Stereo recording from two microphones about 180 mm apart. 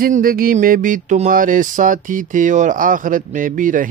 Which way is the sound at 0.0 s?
55° right (ahead or behind).